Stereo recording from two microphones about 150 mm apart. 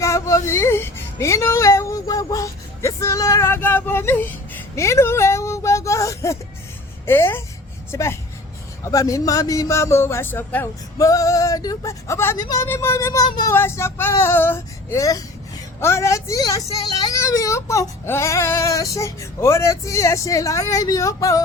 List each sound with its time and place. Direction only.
0.0 s a sound: 20° left (ahead or behind)
8.8 s speech: 20° left (ahead or behind)
13.5 s female singing: 15° left (ahead or behind)
15.8 s speech: 20° left (ahead or behind)